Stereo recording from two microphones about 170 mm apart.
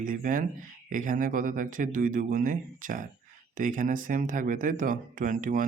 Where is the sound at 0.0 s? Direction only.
50° right (ahead or behind).